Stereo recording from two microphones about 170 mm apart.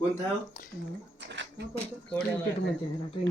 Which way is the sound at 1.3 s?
90° right.